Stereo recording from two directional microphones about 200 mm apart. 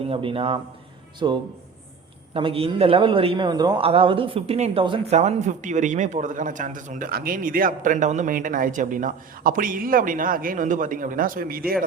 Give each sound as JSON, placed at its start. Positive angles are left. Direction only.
{"t": 0.0, "sound": "a man's voice", "side_deg": -25}